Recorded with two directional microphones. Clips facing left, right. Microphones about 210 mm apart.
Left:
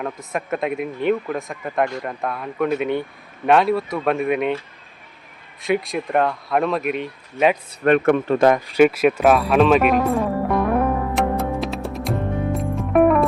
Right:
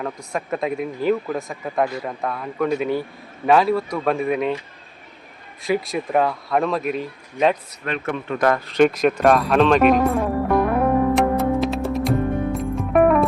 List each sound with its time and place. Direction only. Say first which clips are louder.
0.0 s speech: even; centre (ahead or behind)
5.6 s speech: left 1 dB; centre (ahead or behind)
7.9 s speech: left 10 dB; 55° left (ahead or behind)
8.4 s speech: left 1 dB; 15° left (ahead or behind)
11.1 s music: right 3 dB; centre (ahead or behind)